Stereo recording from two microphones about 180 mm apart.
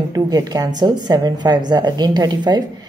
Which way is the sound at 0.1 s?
20° right (ahead or behind).